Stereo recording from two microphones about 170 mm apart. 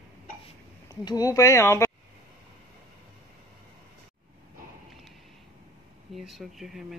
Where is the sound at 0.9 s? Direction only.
20° left (ahead or behind).